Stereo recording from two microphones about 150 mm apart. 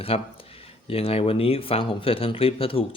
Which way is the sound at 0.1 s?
40° left (ahead or behind).